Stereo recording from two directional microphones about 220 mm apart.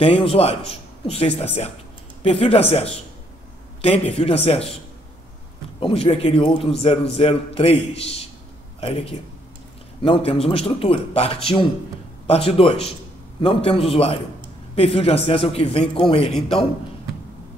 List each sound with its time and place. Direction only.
0.0 s a man's voice: 25° left (ahead or behind)
5.8 s a man's voice: 25° left (ahead or behind)